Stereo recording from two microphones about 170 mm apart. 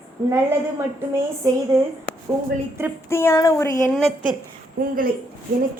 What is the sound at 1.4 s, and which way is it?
Speech, 20° right (ahead or behind).